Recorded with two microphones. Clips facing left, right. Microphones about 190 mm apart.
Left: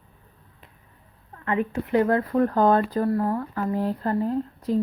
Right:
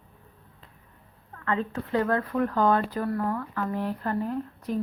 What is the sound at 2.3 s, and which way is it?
Speech, 40° left (ahead or behind).